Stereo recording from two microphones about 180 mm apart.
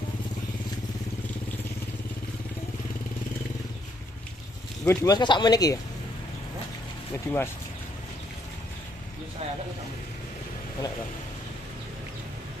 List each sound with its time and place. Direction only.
4.8 s speech: 20° left (ahead or behind)
7.3 s speech: 15° left (ahead or behind)